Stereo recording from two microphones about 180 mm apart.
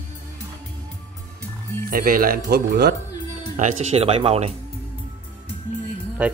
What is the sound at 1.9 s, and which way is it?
Speech, 50° right (ahead or behind).